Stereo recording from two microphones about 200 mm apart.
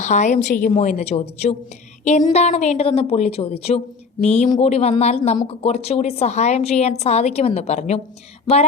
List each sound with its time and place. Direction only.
0.0 s a woman's voice: 35° left (ahead or behind)